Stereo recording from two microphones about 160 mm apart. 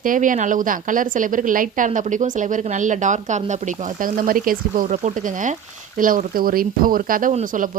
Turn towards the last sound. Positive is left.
turn(degrees=-50)  # may be behind; listen again after turning